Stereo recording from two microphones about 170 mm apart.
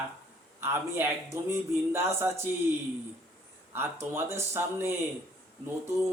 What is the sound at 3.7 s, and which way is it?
A man's voice, 15° right (ahead or behind).